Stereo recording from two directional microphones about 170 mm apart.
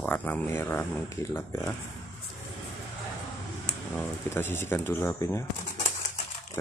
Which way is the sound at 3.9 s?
15° left (ahead or behind).